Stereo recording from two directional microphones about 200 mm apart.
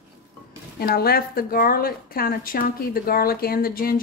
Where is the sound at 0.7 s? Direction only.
50° left (ahead or behind).